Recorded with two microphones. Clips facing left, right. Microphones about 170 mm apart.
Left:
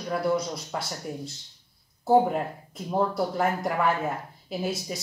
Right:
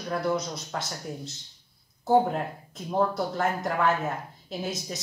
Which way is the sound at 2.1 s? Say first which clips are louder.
Left 1 dB; 5° left (ahead or behind).